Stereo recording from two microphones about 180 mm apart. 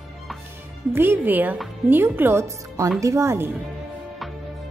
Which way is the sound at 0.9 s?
10° right (ahead or behind).